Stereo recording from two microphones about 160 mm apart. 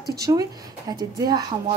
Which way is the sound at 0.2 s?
20° right (ahead or behind).